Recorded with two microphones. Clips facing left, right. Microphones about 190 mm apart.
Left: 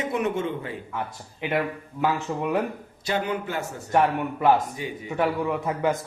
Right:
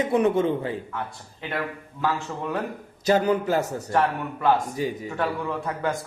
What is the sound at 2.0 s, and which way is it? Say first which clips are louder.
Speech: left 2 dB; 15° left (ahead or behind).